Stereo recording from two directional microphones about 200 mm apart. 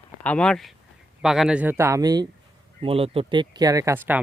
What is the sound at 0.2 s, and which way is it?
Speech, 5° left (ahead or behind).